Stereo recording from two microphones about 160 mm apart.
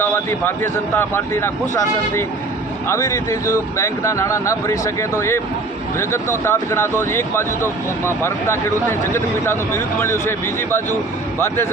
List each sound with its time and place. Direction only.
0.0 s speech: 15° left (ahead or behind)
2.9 s speech: 20° left (ahead or behind)